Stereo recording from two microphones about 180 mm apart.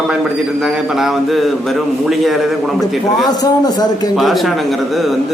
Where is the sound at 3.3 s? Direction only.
20° left (ahead or behind).